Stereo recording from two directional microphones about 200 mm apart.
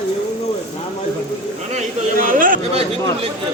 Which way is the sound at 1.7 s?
40° right (ahead or behind).